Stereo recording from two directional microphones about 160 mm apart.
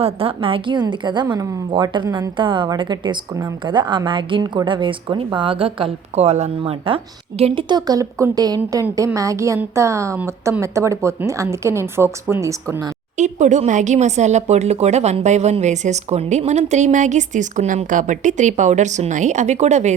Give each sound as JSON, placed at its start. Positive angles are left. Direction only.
{"t": 0.0, "sound": "a woman's voice", "side_deg": -35}
{"t": 13.1, "sound": "speech", "side_deg": -50}